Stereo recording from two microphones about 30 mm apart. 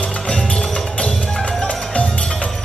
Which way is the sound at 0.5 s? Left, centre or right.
Left.